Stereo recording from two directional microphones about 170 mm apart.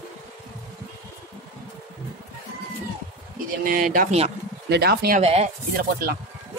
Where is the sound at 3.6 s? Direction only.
55° right (ahead or behind).